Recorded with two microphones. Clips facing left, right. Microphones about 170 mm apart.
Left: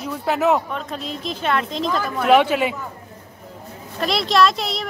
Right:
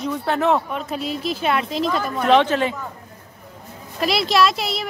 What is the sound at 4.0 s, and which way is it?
Speech, 5° right (ahead or behind).